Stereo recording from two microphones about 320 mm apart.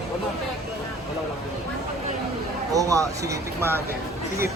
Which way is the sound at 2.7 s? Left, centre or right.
Centre.